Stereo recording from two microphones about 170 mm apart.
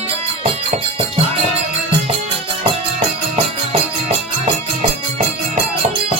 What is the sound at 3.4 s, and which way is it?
Music, 35° right (ahead or behind).